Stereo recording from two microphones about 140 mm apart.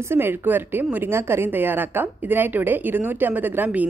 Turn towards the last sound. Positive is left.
turn(degrees=-10)  # may be behind; listen again after turning